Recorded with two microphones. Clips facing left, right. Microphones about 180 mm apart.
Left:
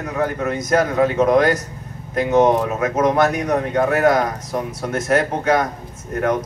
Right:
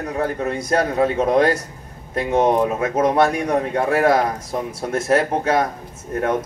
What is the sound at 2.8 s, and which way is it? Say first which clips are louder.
A man's voice: left 2 dB; 30° right (ahead or behind).